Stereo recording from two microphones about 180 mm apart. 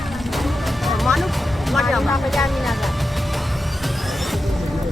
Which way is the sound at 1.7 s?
Centre (ahead or behind).